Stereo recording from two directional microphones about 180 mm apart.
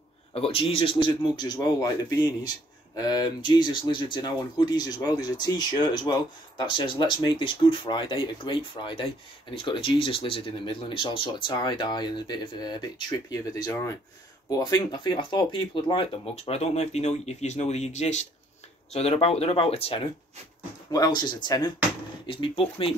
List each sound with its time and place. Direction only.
0.3 s speech: 30° left (ahead or behind)
20.9 s speech: 25° left (ahead or behind)